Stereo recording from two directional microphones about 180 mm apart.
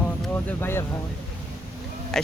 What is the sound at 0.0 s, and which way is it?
Speech, 10° left (ahead or behind).